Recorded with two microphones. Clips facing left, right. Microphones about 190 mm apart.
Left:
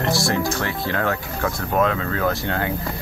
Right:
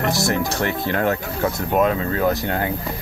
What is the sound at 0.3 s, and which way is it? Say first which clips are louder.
Speech: right 1 dB; 20° right (ahead or behind).